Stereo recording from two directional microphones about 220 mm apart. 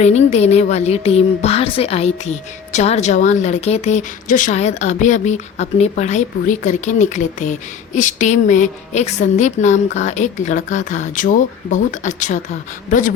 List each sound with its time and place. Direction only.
0.0 s speech: 30° left (ahead or behind)